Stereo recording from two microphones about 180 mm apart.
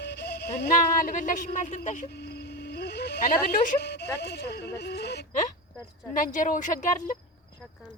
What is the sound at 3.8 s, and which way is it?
Speech, 65° left (ahead or behind).